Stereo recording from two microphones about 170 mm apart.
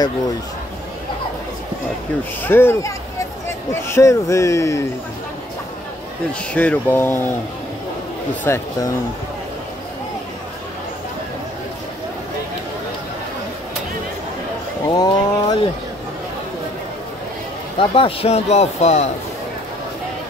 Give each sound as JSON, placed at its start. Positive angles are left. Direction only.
{"t": 2.4, "sound": "speech", "side_deg": 15}
{"t": 6.5, "sound": "speech", "side_deg": 10}
{"t": 8.5, "sound": "speech", "side_deg": 15}
{"t": 14.9, "sound": "a sound", "side_deg": 25}
{"t": 17.7, "sound": "speech", "side_deg": 35}